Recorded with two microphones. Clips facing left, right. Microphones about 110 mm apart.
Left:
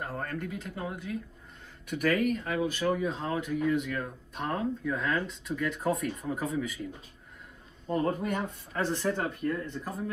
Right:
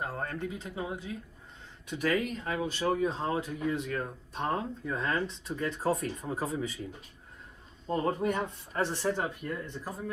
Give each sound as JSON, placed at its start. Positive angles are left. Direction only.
{"t": 0.2, "sound": "speech", "side_deg": -20}
{"t": 1.9, "sound": "speech", "side_deg": -25}
{"t": 7.9, "sound": "speech", "side_deg": -25}